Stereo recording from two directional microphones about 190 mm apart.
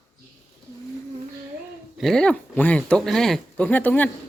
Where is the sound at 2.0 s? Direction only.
5° left (ahead or behind).